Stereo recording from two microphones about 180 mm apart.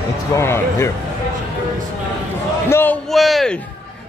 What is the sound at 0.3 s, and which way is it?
Speech, 15° left (ahead or behind).